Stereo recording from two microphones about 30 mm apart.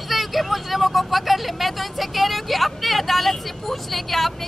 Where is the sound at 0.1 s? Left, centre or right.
Centre.